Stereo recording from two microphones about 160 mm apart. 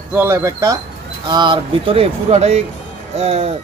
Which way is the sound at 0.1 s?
15° right (ahead or behind).